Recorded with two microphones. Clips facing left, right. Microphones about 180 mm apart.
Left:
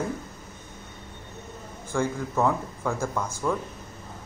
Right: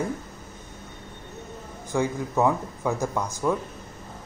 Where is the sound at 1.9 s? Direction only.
15° right (ahead or behind).